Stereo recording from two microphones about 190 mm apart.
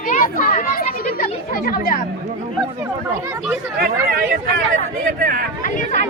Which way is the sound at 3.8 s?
50° right (ahead or behind).